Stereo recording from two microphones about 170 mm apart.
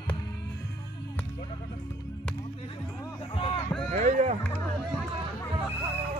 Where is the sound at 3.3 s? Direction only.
30° left (ahead or behind).